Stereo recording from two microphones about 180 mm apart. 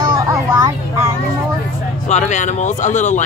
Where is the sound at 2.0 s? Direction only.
40° left (ahead or behind).